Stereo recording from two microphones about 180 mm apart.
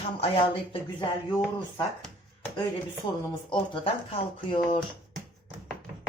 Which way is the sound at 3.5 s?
30° left (ahead or behind).